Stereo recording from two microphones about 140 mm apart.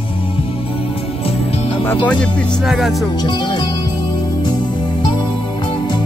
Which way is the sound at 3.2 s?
35° left (ahead or behind).